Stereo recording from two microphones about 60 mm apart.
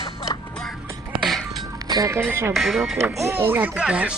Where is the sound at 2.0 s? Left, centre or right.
Right.